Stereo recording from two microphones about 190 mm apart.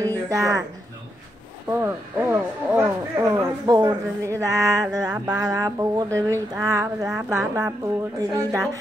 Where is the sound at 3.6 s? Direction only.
20° right (ahead or behind).